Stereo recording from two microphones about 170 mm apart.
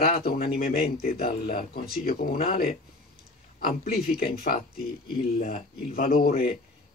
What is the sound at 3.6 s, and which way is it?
Speech, 60° left (ahead or behind).